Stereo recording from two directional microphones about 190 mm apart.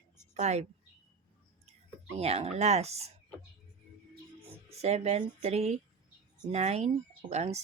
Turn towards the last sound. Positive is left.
turn(degrees=-35)  # may be behind; listen again after turning